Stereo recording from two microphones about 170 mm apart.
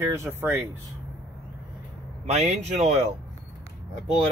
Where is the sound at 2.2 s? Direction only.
40° right (ahead or behind).